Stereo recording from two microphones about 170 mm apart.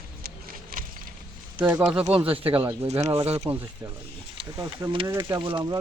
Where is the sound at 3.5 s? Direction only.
30° right (ahead or behind).